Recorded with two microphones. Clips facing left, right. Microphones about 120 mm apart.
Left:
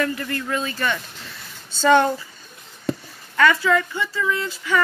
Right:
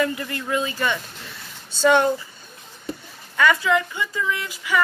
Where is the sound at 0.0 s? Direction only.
20° right (ahead or behind).